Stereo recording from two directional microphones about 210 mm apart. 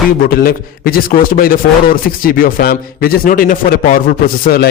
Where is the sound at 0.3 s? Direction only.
45° left (ahead or behind).